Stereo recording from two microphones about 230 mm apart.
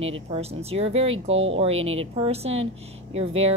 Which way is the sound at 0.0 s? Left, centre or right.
Right.